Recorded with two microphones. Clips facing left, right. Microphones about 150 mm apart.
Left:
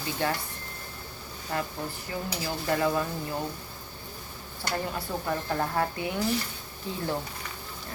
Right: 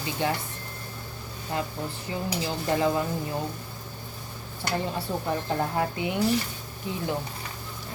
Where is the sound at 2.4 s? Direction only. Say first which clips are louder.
Right 1 dB; 20° right (ahead or behind).